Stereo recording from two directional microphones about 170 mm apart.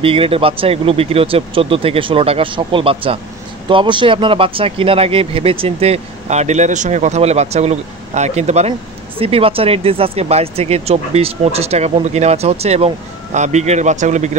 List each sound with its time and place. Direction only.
0.0 s speech: 35° right (ahead or behind)